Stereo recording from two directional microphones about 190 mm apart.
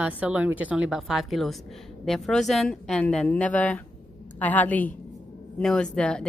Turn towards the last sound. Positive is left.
turn(degrees=5)  # may be behind; listen again after turning